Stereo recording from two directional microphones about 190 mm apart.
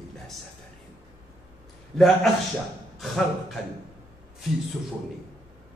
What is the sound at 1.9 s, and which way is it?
Speech, centre (ahead or behind).